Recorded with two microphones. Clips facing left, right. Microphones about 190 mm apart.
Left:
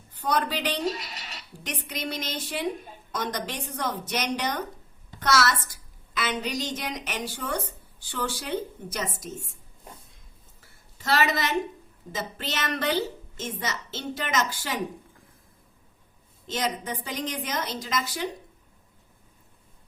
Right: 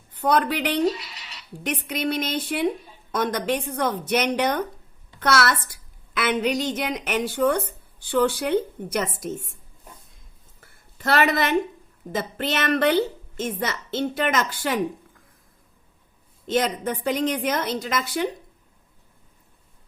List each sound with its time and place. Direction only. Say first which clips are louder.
0.1 s a woman's voice: right 6 dB; 60° right (ahead or behind)
0.9 s scratch: right 5 dB; 45° left (ahead or behind)
1.6 s a woman's voice: right 8 dB; 60° right (ahead or behind)
10.6 s a sound: right 8 dB; 55° right (ahead or behind)
12.1 s a woman's voice: right 7 dB; 55° right (ahead or behind)
16.5 s a woman's voice: right 6 dB; 60° right (ahead or behind)